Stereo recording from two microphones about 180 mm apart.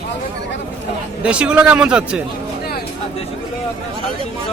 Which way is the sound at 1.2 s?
5° right (ahead or behind).